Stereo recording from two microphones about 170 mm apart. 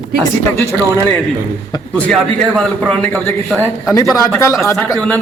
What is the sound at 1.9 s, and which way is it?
A man's voice, 5° left (ahead or behind).